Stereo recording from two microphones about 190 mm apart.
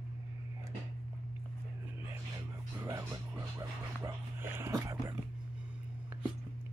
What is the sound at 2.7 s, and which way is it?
Music, 15° right (ahead or behind).